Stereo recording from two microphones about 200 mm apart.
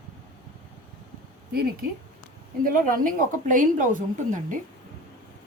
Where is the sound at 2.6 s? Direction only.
45° right (ahead or behind).